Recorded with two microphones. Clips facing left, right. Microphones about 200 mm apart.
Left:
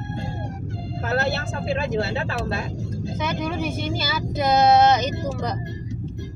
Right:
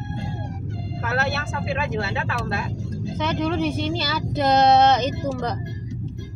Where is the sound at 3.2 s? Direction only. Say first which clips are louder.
Right 4 dB; 10° left (ahead or behind).